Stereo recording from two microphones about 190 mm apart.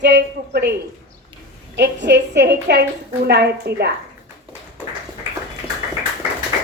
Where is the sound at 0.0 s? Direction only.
60° right (ahead or behind).